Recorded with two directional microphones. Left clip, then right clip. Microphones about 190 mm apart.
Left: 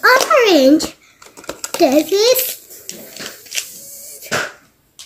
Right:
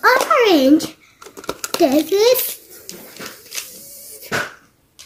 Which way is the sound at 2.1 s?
5° right (ahead or behind).